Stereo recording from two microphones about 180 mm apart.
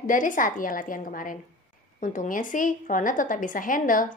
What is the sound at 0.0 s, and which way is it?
Speech, 45° left (ahead or behind).